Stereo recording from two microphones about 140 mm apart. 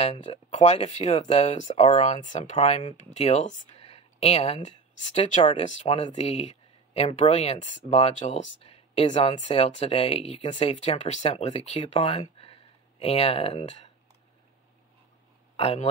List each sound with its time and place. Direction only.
0.0 s speech: 45° left (ahead or behind)
15.5 s speech: 45° left (ahead or behind)